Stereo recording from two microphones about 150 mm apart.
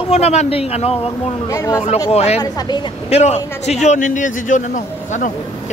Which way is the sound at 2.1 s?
45° left (ahead or behind).